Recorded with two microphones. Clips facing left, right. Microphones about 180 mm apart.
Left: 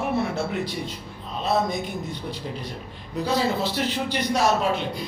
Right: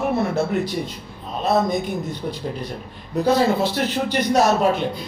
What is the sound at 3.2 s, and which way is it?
Speech, 50° right (ahead or behind).